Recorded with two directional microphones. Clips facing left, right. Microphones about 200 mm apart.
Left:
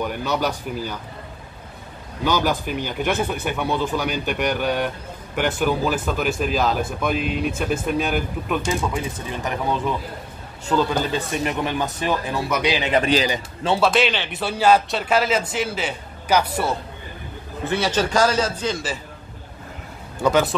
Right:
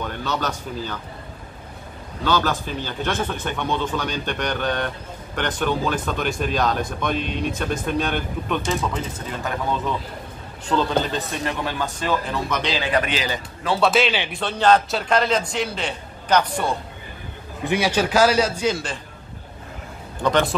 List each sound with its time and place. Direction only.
0.0 s speech: 10° left (ahead or behind)
2.2 s speech: 15° left (ahead or behind)
13.7 s a man's voice: centre (ahead or behind)
17.6 s a man's voice: 10° right (ahead or behind)
20.2 s speech: 5° left (ahead or behind)